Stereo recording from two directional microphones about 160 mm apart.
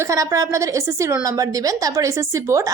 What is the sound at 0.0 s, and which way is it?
A woman's voice, 20° right (ahead or behind).